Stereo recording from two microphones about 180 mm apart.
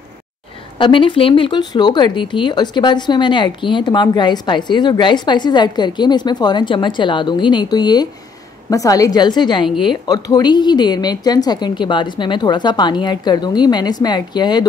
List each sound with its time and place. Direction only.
0.7 s speech: 30° left (ahead or behind)